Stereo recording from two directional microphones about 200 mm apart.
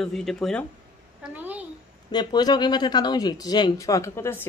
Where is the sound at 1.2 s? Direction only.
10° right (ahead or behind).